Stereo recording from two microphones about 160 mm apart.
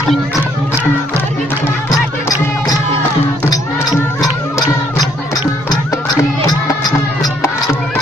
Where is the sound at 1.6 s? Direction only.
15° left (ahead or behind).